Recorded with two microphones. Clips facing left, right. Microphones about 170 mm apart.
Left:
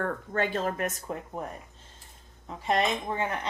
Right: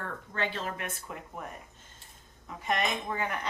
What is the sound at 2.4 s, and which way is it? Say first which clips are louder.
Speech: left 4 dB; 30° left (ahead or behind).